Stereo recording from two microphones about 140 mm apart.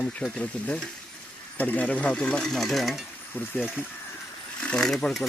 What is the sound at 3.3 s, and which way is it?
Speech, 15° left (ahead or behind).